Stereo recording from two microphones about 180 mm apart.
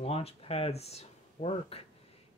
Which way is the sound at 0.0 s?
35° left (ahead or behind).